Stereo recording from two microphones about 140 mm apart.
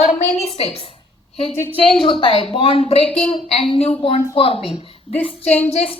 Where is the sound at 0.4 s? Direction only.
45° left (ahead or behind).